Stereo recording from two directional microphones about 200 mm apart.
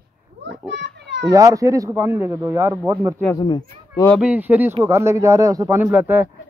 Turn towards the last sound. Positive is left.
turn(degrees=-10)  # may be behind; listen again after turning